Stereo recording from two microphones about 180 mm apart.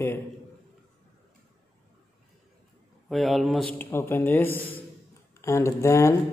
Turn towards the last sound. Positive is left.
turn(degrees=15)  # may be behind; listen again after turning